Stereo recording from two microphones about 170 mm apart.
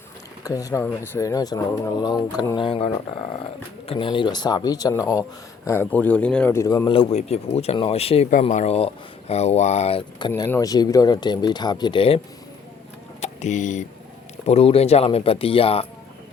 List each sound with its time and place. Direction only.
0.4 s speech: 20° left (ahead or behind); by 8.3 s 35° left (ahead or behind)
8.3 s speech: 45° left (ahead or behind)
13.2 s speech: 45° left (ahead or behind)
14.4 s speech: 35° left (ahead or behind)